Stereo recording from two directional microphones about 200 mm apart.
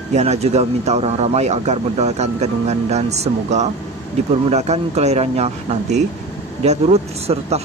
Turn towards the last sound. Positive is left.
turn(degrees=-30)  # may be behind; listen again after turning